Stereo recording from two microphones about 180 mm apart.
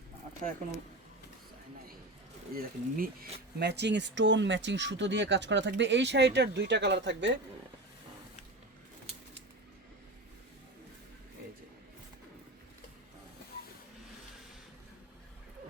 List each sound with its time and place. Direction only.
2.6 s speech: 55° right (ahead or behind)
3.6 s speech: 70° right (ahead or behind); by 7.3 s 85° right